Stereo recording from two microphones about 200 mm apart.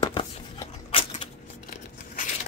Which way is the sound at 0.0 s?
20° left (ahead or behind).